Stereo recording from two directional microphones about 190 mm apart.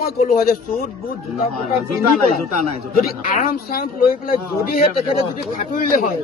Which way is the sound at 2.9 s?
50° left (ahead or behind).